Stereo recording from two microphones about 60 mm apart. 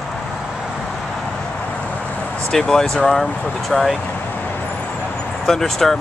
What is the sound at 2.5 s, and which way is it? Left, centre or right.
Speech, centre.